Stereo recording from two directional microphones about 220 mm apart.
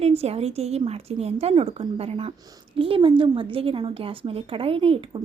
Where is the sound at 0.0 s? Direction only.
30° right (ahead or behind).